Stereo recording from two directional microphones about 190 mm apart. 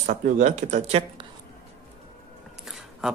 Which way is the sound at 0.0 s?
40° right (ahead or behind).